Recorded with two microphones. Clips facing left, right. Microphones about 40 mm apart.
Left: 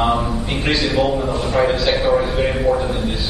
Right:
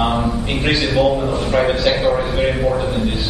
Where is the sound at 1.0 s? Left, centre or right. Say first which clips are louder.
Right 2 dB; centre.